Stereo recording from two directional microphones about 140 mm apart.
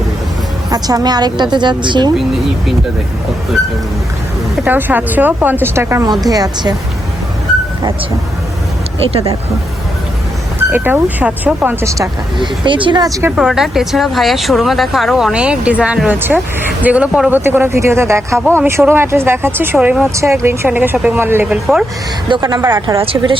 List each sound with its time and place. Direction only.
0.7 s a woman's voice: 25° right (ahead or behind)
4.6 s speech: 10° right (ahead or behind); by 6.7 s 25° right (ahead or behind)
10.6 s speech: 15° right (ahead or behind)
12.4 s a woman's voice: 35° right (ahead or behind)
13.3 s speech: 5° right (ahead or behind)
23.0 s a woman's voice: 40° right (ahead or behind)